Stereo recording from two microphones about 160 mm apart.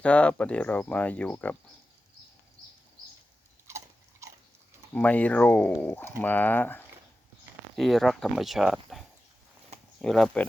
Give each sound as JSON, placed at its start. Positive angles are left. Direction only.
{"t": 0.0, "sound": "speech", "side_deg": 10}
{"t": 3.7, "sound": "biting", "side_deg": -15}
{"t": 4.9, "sound": "speech", "side_deg": 10}
{"t": 7.8, "sound": "speech", "side_deg": 0}